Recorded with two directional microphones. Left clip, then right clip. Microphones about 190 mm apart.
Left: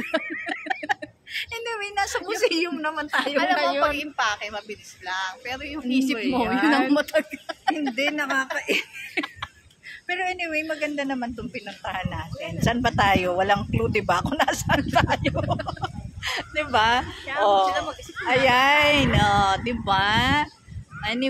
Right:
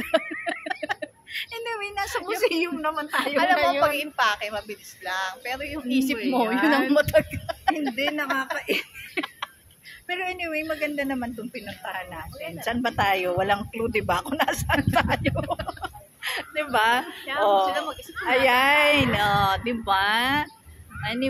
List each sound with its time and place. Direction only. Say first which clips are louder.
0.2 s a sound: even; 20° left (ahead or behind)
2.4 s speech: left 1 dB; 15° left (ahead or behind)
3.8 s a woman's voice: right 1 dB; 15° right (ahead or behind)
6.4 s speech: even; 25° left (ahead or behind)
6.9 s a sound: right 2 dB; 15° right (ahead or behind)
7.9 s speech: left 1 dB; 20° left (ahead or behind)
8.5 s a sound: left 2 dB; 15° left (ahead or behind)
10.0 s speech: left 2 dB; 15° left (ahead or behind)
11.8 s speech: left 3 dB; 25° left (ahead or behind)
17.6 s speech: left 1 dB; 5° right (ahead or behind)
18.2 s speech: left 1 dB; 10° left (ahead or behind)